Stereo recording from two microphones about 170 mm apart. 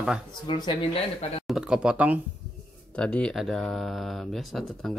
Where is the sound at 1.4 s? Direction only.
5° right (ahead or behind).